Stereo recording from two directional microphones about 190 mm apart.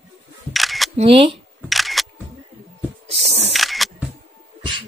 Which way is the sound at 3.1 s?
30° right (ahead or behind).